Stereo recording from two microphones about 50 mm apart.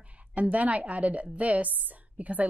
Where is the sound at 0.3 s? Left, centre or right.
Right.